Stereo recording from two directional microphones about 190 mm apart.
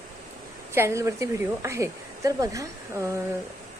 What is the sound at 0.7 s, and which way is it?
Speech, 15° right (ahead or behind).